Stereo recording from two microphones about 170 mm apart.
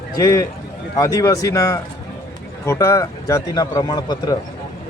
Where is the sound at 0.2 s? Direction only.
20° left (ahead or behind).